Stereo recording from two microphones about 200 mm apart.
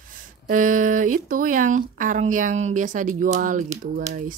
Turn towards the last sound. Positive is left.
turn(degrees=-40)  # may be behind; listen again after turning